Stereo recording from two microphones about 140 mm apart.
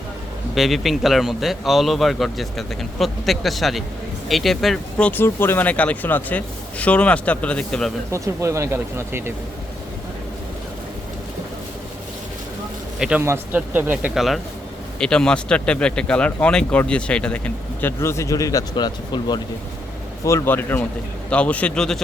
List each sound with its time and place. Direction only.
0.5 s speech: centre (ahead or behind)
8.1 s speech: 20° right (ahead or behind)
13.0 s a man's voice: 5° right (ahead or behind)
14.2 s speech: centre (ahead or behind); by 19.4 s 30° left (ahead or behind)
20.2 s speech: 20° left (ahead or behind)